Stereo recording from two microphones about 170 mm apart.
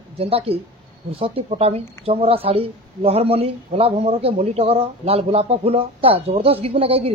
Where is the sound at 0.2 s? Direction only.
35° right (ahead or behind).